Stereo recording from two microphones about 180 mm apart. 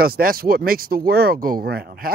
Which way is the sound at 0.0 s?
55° right (ahead or behind).